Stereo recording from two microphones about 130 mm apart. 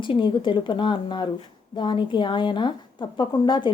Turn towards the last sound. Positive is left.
turn(degrees=35)  # may be behind; listen again after turning